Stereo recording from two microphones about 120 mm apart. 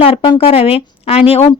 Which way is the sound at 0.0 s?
50° left (ahead or behind).